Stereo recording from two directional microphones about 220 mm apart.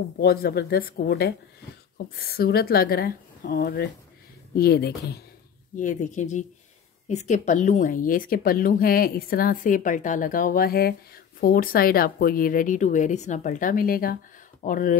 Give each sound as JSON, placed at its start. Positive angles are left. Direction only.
{"t": 0.2, "sound": "a woman's voice", "side_deg": 45}
{"t": 5.8, "sound": "speech", "side_deg": 35}